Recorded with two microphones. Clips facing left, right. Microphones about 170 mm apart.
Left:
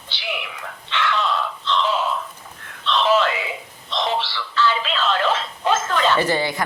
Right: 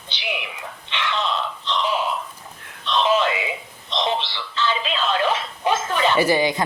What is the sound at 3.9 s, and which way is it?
Speech, 20° right (ahead or behind).